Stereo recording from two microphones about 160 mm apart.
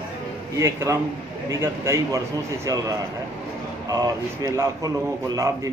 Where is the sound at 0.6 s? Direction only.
15° right (ahead or behind).